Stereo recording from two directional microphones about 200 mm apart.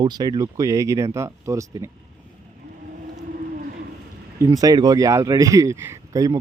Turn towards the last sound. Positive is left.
turn(degrees=-15)  # may be behind; listen again after turning